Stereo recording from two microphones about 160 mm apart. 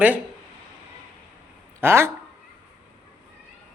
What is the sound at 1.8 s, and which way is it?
Speech, 15° right (ahead or behind).